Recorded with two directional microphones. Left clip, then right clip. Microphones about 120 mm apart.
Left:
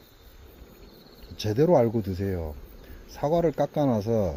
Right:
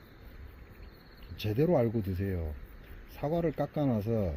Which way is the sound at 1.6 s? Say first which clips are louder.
Left 7 dB; 40° left (ahead or behind).